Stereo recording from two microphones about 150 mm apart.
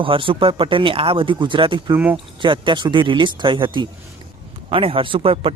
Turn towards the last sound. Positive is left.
turn(degrees=-40)  # may be behind; listen again after turning